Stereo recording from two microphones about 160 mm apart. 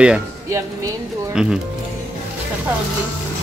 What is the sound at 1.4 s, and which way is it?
Speech, 5° right (ahead or behind).